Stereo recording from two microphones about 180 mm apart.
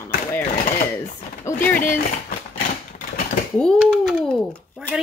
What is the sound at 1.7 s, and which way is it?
Speech, 50° left (ahead or behind).